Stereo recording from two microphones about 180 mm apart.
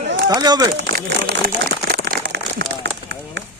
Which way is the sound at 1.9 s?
55° right (ahead or behind).